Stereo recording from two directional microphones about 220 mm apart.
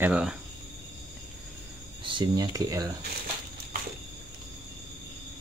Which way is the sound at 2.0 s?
20° right (ahead or behind).